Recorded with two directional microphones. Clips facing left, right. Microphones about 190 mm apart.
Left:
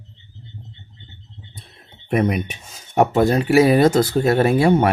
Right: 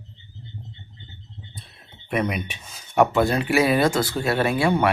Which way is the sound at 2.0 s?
45° left (ahead or behind).